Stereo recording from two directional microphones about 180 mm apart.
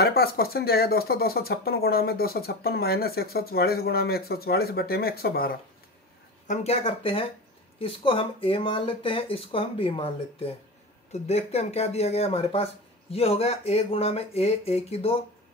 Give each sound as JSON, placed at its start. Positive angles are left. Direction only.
{"t": 0.0, "sound": "speech", "side_deg": 60}
{"t": 6.4, "sound": "speech", "side_deg": 40}